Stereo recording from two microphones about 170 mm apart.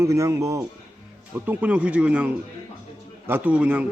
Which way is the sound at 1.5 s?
10° right (ahead or behind).